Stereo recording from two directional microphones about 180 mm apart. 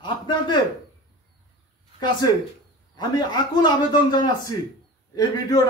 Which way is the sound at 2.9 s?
25° left (ahead or behind).